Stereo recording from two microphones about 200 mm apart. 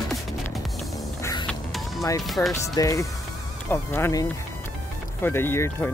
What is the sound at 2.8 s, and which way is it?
Speech, 15° left (ahead or behind).